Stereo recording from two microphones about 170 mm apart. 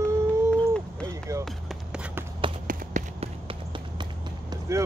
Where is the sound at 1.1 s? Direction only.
20° right (ahead or behind).